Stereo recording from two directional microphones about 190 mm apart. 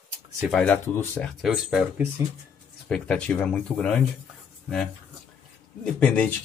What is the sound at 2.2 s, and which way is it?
Speech, 15° right (ahead or behind).